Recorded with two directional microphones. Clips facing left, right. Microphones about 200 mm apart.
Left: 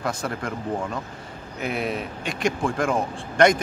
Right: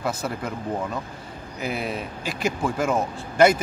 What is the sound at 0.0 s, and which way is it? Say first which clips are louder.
Speech: even; 5° right (ahead or behind).